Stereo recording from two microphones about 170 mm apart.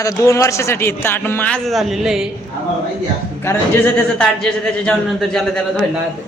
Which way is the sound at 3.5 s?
15° left (ahead or behind).